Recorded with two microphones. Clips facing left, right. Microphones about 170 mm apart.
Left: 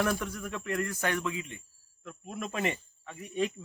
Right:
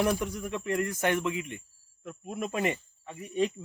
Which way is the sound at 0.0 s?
15° right (ahead or behind).